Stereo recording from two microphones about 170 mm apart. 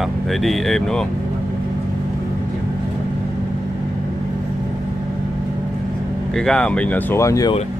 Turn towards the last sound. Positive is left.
turn(degrees=20)  # may be behind; listen again after turning